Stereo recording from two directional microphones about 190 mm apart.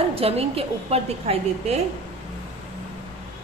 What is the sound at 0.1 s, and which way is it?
A woman's voice, 30° right (ahead or behind).